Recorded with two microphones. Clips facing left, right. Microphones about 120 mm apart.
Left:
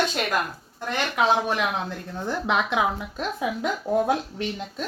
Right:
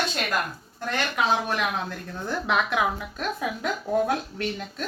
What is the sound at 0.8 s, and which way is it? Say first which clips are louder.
A woman's voice: left 2 dB; 15° left (ahead or behind).